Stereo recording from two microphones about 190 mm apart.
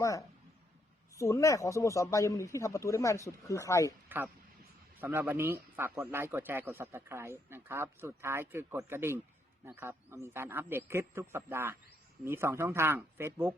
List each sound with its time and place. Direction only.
0.0 s speech: 15° left (ahead or behind)
4.9 s a man's voice: 10° right (ahead or behind)